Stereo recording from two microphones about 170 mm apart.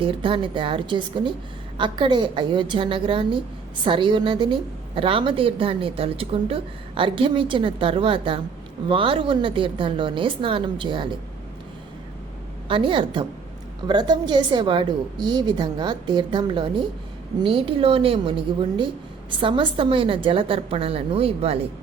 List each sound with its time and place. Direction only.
0.0 s a woman's voice: 30° right (ahead or behind)
12.6 s a woman's voice: 30° right (ahead or behind)